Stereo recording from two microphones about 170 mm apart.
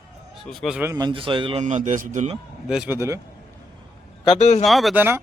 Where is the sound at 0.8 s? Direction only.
20° right (ahead or behind).